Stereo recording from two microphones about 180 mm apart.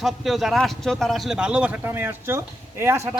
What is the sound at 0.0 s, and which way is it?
A man's voice, centre (ahead or behind).